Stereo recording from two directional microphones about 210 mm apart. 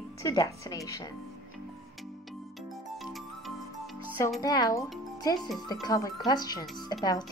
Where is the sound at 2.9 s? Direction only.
Centre (ahead or behind).